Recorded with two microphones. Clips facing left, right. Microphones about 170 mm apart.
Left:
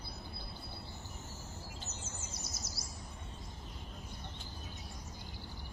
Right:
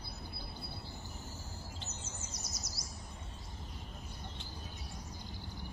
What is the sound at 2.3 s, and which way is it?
Chirp, 25° left (ahead or behind).